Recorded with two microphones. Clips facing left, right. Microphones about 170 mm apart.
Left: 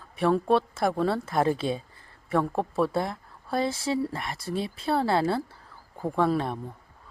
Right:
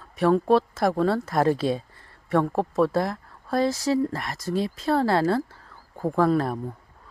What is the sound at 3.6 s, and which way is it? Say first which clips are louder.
Speech: right 5 dB; 30° left (ahead or behind).